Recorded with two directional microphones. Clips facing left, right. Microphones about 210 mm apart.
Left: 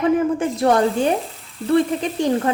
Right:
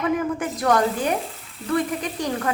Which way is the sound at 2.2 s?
25° left (ahead or behind).